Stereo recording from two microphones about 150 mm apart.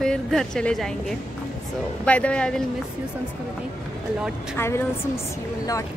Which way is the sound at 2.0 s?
10° left (ahead or behind).